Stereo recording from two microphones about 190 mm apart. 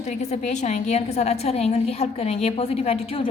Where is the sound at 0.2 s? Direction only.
35° left (ahead or behind).